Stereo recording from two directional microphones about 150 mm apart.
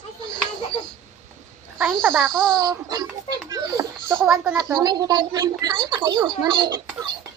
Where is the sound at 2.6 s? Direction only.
25° right (ahead or behind).